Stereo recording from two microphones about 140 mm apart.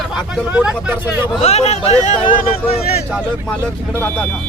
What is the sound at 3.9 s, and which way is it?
Speech, 15° left (ahead or behind).